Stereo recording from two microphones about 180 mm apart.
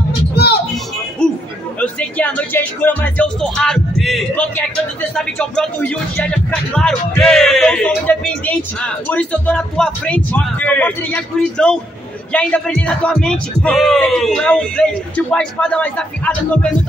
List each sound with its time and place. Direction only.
0.3 s music: 60° left (ahead or behind)
1.2 s a sound: 5° left (ahead or behind)
1.8 s speech: 5° left (ahead or behind)